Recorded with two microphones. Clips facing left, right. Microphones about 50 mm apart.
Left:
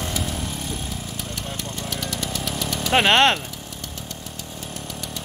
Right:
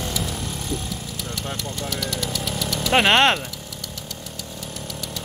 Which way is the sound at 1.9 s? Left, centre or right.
Centre.